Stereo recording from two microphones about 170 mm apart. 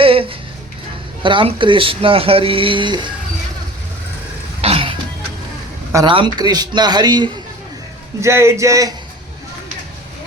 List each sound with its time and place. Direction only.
0.0 s music: 30° right (ahead or behind)
1.2 s speech: 30° right (ahead or behind)
4.6 s throat clearing: 35° right (ahead or behind)
6.1 s a man's voice: 30° right (ahead or behind)